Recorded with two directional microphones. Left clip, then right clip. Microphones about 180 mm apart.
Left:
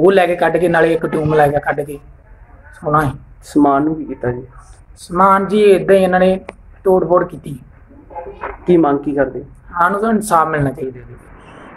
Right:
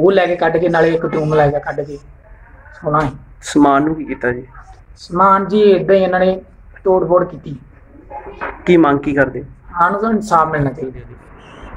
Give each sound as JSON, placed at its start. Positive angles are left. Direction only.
{"t": 0.0, "sound": "speech", "side_deg": 10}
{"t": 8.6, "sound": "speech", "side_deg": 0}